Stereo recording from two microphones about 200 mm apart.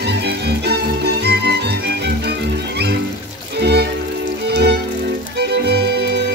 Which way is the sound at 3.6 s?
55° right (ahead or behind).